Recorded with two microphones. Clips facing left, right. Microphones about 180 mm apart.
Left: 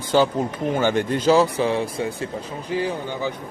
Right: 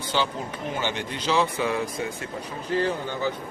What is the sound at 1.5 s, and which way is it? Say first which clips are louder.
Speech: left 4 dB; 30° left (ahead or behind).